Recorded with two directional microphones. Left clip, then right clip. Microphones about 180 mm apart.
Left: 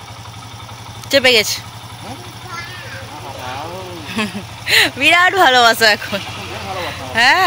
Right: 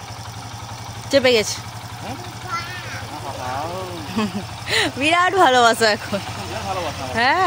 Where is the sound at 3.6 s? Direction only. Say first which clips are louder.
Even; 10° right (ahead or behind).